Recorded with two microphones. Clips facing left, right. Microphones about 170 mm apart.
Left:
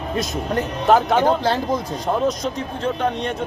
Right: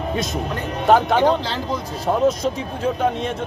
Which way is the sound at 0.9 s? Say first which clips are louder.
Right 1 dB; centre (ahead or behind).